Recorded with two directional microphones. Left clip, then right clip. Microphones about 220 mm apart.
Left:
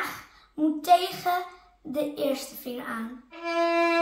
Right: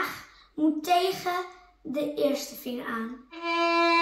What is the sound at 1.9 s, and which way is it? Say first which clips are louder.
Speech: right 1 dB; 20° left (ahead or behind).